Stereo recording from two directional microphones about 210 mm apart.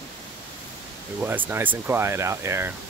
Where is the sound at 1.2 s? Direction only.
10° right (ahead or behind).